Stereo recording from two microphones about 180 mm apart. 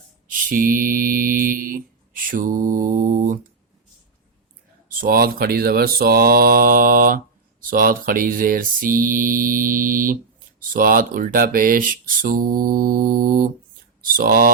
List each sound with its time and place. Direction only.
0.3 s mantra: 50° right (ahead or behind)
4.9 s speech: 50° right (ahead or behind)